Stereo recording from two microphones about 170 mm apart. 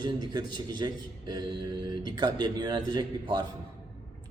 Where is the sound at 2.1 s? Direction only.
25° right (ahead or behind).